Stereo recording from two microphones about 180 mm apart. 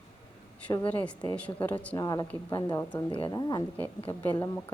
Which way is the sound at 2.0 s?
20° left (ahead or behind).